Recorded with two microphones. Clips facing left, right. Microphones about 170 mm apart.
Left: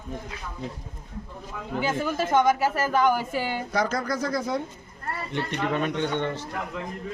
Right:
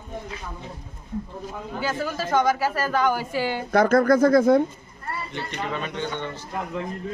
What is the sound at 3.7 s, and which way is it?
Speech, 55° right (ahead or behind).